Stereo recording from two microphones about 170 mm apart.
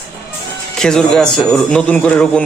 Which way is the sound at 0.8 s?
5° left (ahead or behind).